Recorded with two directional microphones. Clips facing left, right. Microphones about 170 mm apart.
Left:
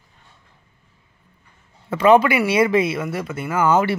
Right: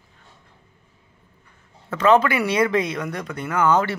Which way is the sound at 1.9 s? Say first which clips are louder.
Left 3 dB; 10° left (ahead or behind).